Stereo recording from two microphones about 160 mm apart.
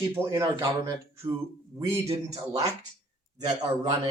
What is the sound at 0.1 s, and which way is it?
Speech, 20° right (ahead or behind).